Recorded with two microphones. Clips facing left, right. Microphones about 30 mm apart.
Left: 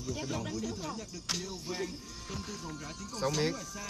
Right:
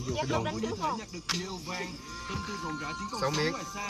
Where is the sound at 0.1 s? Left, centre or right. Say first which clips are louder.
Right 6 dB; right.